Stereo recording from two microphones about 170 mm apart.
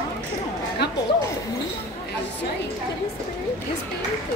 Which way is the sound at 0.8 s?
80° left.